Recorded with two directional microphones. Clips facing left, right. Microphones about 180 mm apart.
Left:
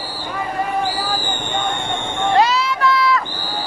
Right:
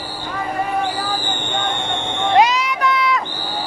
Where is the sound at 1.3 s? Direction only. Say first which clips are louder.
Even; 10° left (ahead or behind).